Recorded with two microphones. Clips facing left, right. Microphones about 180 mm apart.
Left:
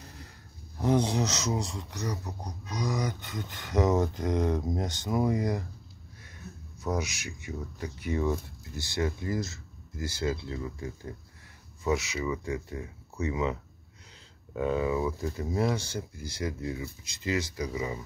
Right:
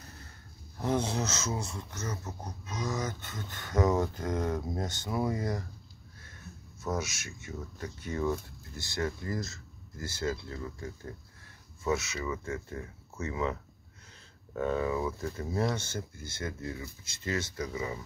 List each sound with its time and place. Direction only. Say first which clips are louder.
0.7 s speech: left 4 dB; 15° left (ahead or behind)
6.8 s speech: left 2 dB; 15° left (ahead or behind)